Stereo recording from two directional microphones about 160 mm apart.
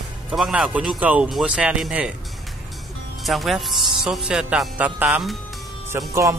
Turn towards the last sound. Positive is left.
turn(degrees=-20)  # may be behind; listen again after turning